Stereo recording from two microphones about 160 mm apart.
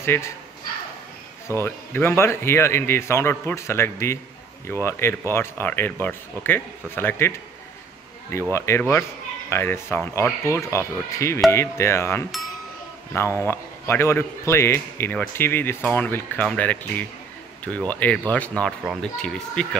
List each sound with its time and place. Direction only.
0.0 s speech: 15° left (ahead or behind)
1.5 s a man's voice: 15° left (ahead or behind)